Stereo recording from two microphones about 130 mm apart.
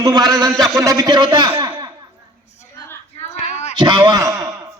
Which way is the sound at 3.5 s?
60° left (ahead or behind).